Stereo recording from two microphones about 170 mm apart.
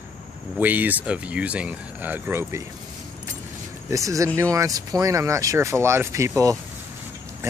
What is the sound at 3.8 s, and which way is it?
Speech, 20° right (ahead or behind).